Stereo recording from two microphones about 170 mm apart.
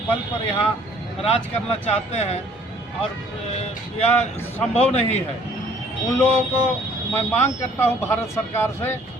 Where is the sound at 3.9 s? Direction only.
40° left (ahead or behind).